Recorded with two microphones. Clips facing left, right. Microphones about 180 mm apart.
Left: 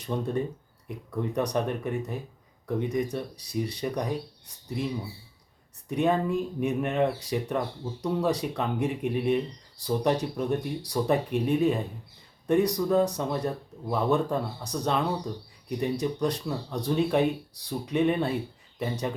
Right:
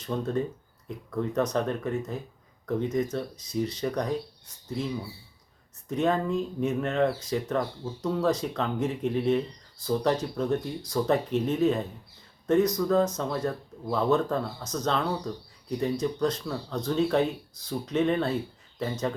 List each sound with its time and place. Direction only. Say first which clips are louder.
0.0 s speech: even; 15° left (ahead or behind)
5.9 s speech: left 1 dB; 15° left (ahead or behind)